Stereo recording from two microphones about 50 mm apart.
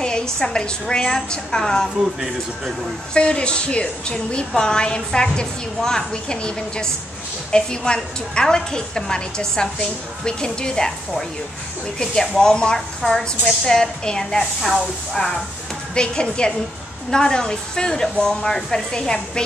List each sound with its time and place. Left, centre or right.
0.0 s a woman's voice: centre
3.2 s a woman's voice: centre
15.9 s a woman's voice: centre